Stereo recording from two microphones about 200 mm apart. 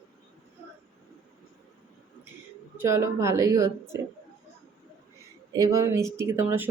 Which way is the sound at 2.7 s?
15° right (ahead or behind).